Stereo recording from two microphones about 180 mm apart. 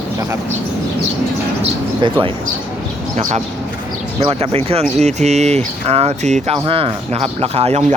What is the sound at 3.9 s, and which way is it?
Speech, 35° right (ahead or behind).